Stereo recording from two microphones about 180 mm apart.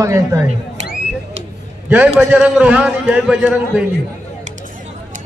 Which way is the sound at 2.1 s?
5° right (ahead or behind).